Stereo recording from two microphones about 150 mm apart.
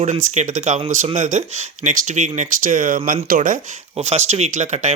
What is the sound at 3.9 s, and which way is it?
Speech, 45° right (ahead or behind).